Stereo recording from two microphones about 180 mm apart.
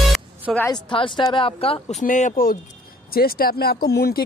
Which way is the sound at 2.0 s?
45° left (ahead or behind).